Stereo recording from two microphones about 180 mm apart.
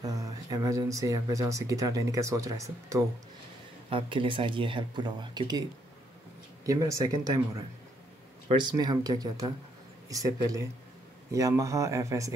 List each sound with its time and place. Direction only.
0.0 s speech: 20° right (ahead or behind)
3.9 s speech: 30° right (ahead or behind)
6.6 s speech: 20° right (ahead or behind)